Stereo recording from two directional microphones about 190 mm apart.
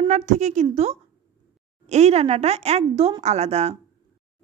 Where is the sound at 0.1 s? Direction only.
40° right (ahead or behind).